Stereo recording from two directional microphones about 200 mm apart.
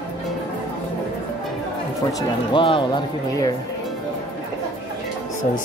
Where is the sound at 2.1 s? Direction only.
20° left (ahead or behind).